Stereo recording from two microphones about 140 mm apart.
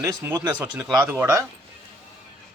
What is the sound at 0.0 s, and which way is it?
Speech, 20° right (ahead or behind).